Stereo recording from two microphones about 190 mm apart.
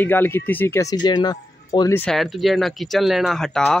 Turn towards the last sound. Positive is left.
turn(degrees=5)  # may be behind; listen again after turning